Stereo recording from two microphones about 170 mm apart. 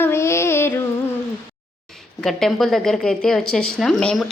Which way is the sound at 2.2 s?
Centre (ahead or behind).